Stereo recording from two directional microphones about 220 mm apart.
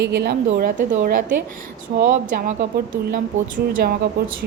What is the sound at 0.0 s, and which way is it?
A woman's voice, 50° right (ahead or behind).